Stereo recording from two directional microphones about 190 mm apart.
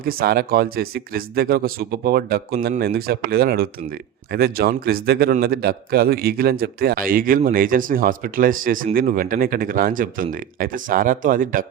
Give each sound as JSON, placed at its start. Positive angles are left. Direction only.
{"t": 0.0, "sound": "a man's voice", "side_deg": -50}